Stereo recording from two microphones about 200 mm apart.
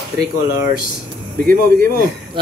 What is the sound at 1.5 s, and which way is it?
Speech, 50° right (ahead or behind).